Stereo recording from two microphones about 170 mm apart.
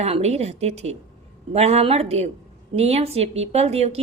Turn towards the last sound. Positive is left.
turn(degrees=-35)  # may be behind; listen again after turning